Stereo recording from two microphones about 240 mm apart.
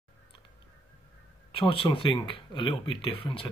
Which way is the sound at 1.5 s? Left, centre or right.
Left.